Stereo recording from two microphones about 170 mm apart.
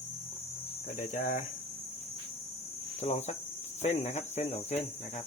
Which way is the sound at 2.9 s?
40° left (ahead or behind).